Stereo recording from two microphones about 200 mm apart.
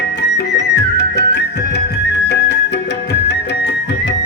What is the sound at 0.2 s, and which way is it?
Music, 55° left (ahead or behind).